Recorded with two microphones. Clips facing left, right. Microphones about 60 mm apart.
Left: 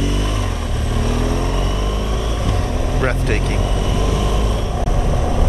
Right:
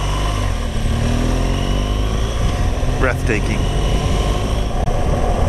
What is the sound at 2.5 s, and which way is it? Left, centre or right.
Vehicle, centre.